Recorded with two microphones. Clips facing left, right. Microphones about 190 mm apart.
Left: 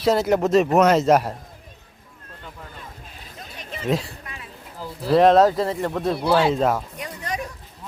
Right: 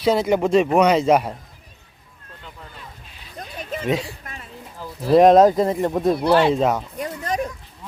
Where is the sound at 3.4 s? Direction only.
45° right (ahead or behind).